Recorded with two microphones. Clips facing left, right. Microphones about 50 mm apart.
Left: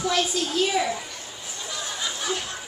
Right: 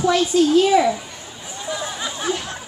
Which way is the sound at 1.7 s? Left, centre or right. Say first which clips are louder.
Right 5 dB; right.